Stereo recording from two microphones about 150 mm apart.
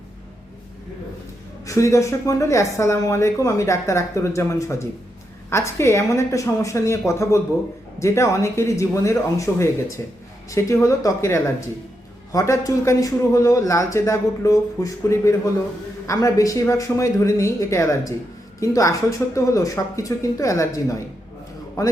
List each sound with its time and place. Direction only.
1.6 s speech: 20° left (ahead or behind)